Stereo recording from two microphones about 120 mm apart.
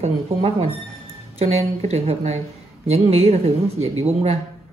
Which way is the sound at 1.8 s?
60° right (ahead or behind).